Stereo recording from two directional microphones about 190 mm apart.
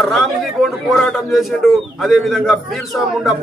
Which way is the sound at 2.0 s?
Centre (ahead or behind).